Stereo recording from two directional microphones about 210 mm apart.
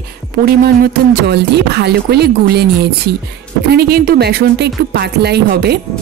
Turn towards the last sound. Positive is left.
turn(degrees=-50)  # may be behind; listen again after turning